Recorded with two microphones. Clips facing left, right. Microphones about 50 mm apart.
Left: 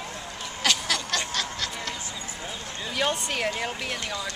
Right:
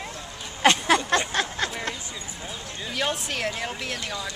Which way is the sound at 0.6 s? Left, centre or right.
Right.